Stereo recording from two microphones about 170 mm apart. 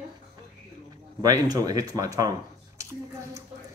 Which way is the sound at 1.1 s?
20° right (ahead or behind).